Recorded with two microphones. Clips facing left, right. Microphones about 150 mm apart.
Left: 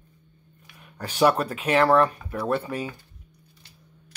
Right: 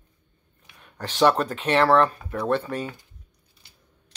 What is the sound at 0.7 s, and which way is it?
Speech, 10° left (ahead or behind).